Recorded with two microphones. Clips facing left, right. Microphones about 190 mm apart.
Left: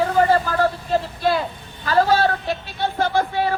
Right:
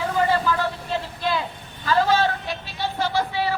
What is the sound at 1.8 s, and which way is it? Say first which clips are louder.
Speech: left 3 dB; 45° left (ahead or behind).